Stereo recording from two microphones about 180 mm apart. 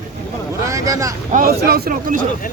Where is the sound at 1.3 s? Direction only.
50° right (ahead or behind).